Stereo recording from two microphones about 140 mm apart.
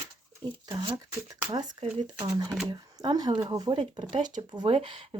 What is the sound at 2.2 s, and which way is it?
Speech, 25° right (ahead or behind).